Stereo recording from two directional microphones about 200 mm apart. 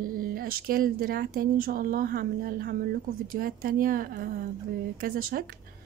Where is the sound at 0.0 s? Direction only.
45° right (ahead or behind).